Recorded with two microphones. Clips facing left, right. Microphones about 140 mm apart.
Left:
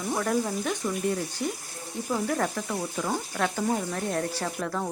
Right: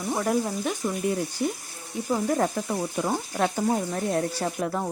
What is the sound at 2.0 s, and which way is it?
Speech, 20° right (ahead or behind).